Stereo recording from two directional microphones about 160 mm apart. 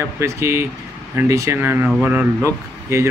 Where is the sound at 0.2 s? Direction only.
15° right (ahead or behind).